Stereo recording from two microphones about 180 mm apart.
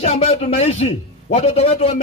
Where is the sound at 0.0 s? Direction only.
35° left (ahead or behind).